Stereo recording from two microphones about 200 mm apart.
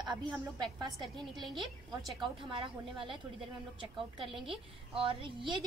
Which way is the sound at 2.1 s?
25° right (ahead or behind).